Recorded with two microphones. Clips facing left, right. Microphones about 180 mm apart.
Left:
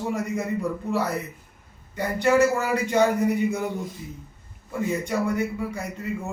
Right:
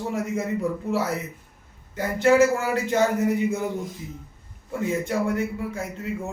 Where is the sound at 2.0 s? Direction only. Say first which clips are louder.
Right 2 dB; centre (ahead or behind).